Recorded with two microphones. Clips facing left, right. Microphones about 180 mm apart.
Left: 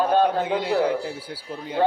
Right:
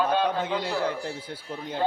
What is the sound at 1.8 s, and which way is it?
Speech, 65° left (ahead or behind).